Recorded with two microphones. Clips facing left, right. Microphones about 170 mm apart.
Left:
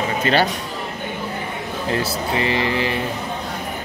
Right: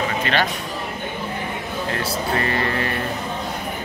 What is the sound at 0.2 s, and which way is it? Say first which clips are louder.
Speech: left 6 dB; 35° left (ahead or behind).